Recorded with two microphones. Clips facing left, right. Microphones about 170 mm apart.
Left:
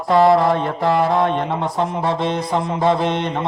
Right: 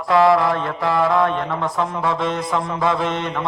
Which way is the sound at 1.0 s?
35° left (ahead or behind).